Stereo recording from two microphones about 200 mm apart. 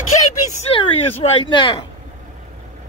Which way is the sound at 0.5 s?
25° left (ahead or behind).